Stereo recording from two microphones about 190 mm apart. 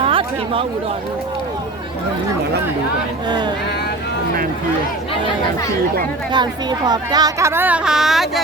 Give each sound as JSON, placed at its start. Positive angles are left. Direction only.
{"t": 0.0, "sound": "a sound", "side_deg": -30}
{"t": 3.2, "sound": "speech", "side_deg": -20}
{"t": 6.3, "sound": "speech", "side_deg": -25}